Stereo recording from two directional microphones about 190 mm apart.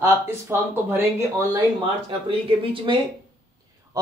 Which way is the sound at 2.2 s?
30° right (ahead or behind).